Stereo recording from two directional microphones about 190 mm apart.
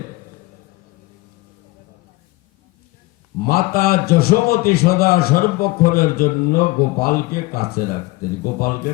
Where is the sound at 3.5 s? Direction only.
55° left (ahead or behind).